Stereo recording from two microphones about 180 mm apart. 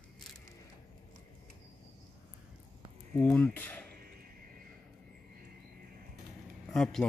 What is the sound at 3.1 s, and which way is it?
Speech, 10° left (ahead or behind).